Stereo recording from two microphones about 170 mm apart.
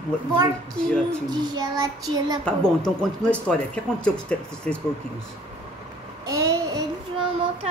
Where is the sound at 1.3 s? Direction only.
25° right (ahead or behind).